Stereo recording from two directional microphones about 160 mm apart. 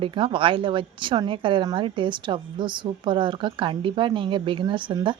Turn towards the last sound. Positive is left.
turn(degrees=-30)  # may be behind; listen again after turning